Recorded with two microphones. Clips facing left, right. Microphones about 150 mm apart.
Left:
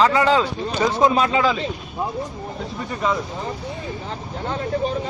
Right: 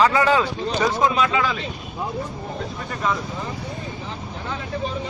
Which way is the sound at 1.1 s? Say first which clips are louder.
Left 2 dB; 35° left (ahead or behind).